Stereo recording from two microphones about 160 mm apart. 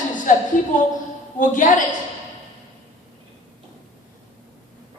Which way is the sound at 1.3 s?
55° left (ahead or behind).